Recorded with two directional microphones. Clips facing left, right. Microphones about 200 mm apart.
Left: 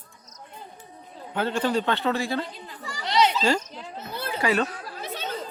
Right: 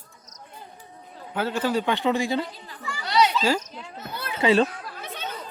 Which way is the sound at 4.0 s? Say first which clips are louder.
Left 2 dB; 30° left (ahead or behind).